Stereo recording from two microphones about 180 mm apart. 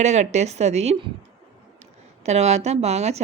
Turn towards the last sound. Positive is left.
turn(degrees=-35)  # may be behind; listen again after turning